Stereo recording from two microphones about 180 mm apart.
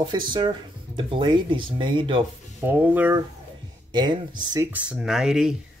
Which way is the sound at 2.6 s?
10° right (ahead or behind).